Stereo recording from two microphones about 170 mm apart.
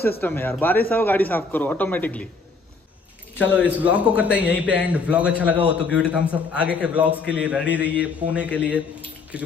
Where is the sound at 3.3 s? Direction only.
10° left (ahead or behind).